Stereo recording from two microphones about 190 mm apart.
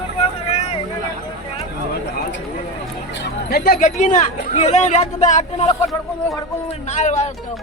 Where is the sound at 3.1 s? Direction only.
65° left (ahead or behind); by 7.3 s 35° left (ahead or behind).